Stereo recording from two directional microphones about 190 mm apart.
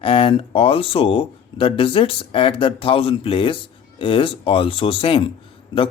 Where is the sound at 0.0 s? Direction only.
30° left (ahead or behind).